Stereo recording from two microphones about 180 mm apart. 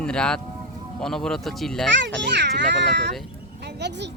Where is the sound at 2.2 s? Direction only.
70° right (ahead or behind).